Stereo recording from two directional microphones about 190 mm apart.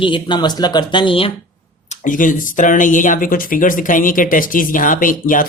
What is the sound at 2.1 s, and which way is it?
Speech, 45° left (ahead or behind).